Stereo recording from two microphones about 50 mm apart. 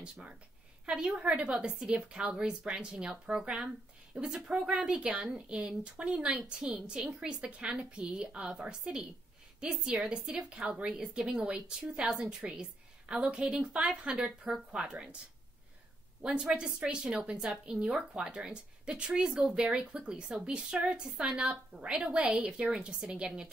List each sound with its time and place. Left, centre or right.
0.0 s a woman's voice: right
16.2 s a woman's voice: centre